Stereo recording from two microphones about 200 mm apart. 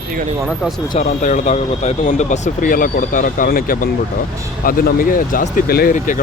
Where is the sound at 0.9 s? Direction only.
35° left (ahead or behind).